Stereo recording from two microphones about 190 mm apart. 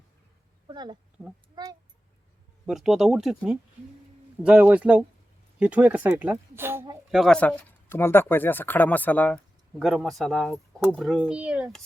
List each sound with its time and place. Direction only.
0.7 s speech: 25° right (ahead or behind)
2.6 s speech: centre (ahead or behind)
7.2 s speech: 5° left (ahead or behind)